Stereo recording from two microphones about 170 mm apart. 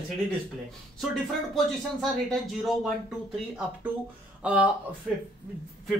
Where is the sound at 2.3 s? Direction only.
Centre (ahead or behind).